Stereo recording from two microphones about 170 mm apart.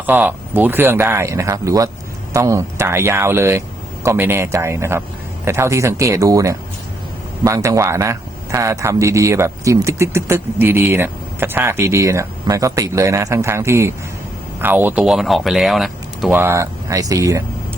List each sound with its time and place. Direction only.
0.0 s speech: 10° right (ahead or behind)
16.4 s speech: 15° right (ahead or behind)